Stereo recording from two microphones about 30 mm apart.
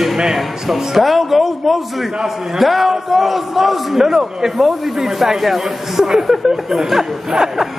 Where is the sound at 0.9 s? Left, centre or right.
Centre.